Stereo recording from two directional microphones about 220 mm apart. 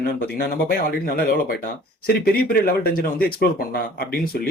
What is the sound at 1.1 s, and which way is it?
Speech, 40° left (ahead or behind).